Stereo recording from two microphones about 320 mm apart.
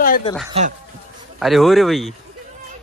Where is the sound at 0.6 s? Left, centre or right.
Centre.